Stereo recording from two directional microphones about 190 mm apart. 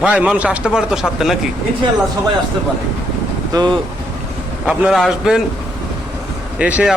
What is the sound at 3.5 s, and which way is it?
Speech, 20° right (ahead or behind).